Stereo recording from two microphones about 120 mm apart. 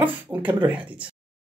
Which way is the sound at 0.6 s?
10° right (ahead or behind).